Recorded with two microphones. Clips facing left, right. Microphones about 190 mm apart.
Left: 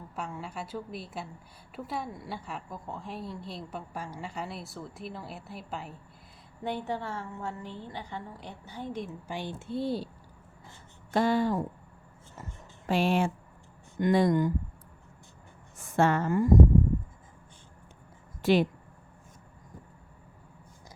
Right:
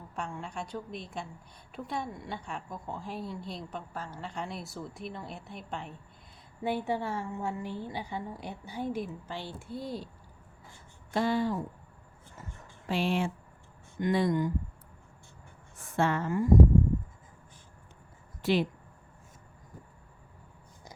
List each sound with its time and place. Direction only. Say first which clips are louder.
0.2 s a woman's voice: even; 5° left (ahead or behind)
6.6 s a woman's voice: right 2 dB; 10° right (ahead or behind)
9.0 s speech: left 3 dB; 15° left (ahead or behind); by 10.1 s 30° left (ahead or behind)
11.1 s speech: left 3 dB; 45° left (ahead or behind)
12.9 s speech: left 3 dB; 45° left (ahead or behind)
16.0 s speech: left 4 dB; 45° left (ahead or behind)